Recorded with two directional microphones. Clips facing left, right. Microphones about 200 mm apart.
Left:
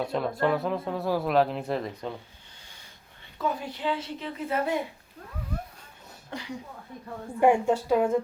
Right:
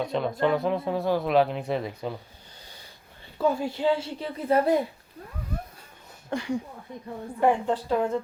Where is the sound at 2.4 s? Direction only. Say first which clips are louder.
Right 5 dB; 35° right (ahead or behind).